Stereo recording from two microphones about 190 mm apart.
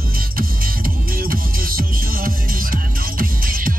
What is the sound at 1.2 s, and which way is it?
Music, 50° right (ahead or behind).